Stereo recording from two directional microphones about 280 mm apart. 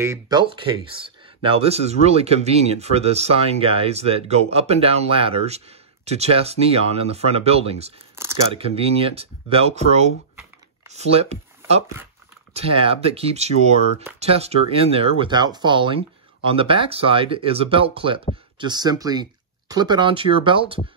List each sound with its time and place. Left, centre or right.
0.0 s speech: centre
8.2 s speech: centre
8.5 s speech: right
10.9 s a sound: right
12.5 s speech: centre